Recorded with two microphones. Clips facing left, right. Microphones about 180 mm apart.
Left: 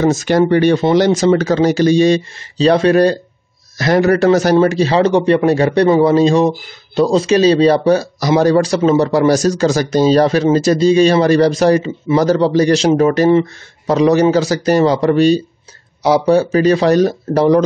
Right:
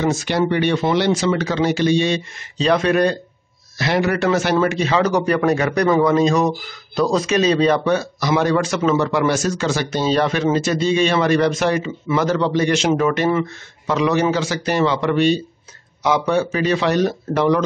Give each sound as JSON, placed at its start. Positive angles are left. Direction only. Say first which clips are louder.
{"t": 0.0, "sound": "speech", "louder": "left 6 dB", "side_deg": 45}